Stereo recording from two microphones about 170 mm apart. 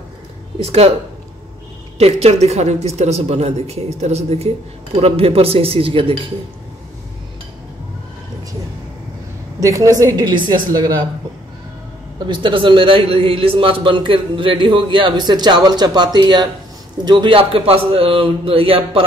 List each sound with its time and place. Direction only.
0.6 s speech: 35° right (ahead or behind)
2.0 s speech: 40° right (ahead or behind)
9.6 s a man's voice: 20° right (ahead or behind)
12.3 s a man's voice: 30° right (ahead or behind)